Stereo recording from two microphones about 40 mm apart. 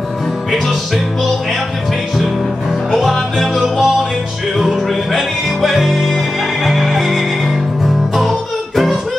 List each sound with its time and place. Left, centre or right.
0.5 s music: centre
3.0 s music: centre